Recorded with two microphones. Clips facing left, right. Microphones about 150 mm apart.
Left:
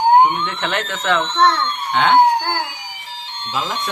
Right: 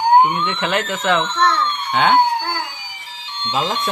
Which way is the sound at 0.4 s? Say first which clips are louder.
Right 2 dB; 5° right (ahead or behind).